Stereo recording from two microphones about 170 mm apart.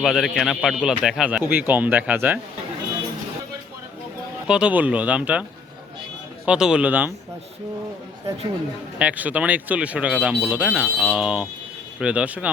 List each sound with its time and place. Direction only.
0.0 s speech: centre (ahead or behind)
4.4 s speech: 5° right (ahead or behind)
9.0 s speech: 10° right (ahead or behind)